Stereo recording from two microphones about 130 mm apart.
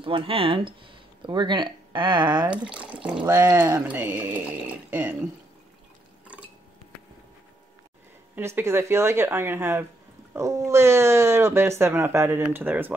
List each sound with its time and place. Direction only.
0.0 s speech: 40° right (ahead or behind)
2.5 s speech: 10° right (ahead or behind)
3.3 s speech: 20° right (ahead or behind)
8.4 s speech: 20° right (ahead or behind)